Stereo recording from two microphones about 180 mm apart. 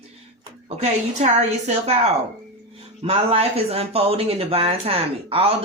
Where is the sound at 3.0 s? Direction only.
35° right (ahead or behind).